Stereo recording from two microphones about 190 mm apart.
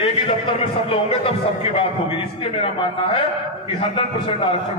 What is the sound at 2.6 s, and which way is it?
Speech, 30° left (ahead or behind).